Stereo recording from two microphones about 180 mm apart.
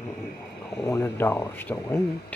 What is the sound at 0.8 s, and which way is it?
Speech, 15° left (ahead or behind).